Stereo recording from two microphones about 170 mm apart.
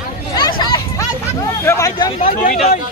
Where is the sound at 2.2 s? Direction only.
50° left (ahead or behind).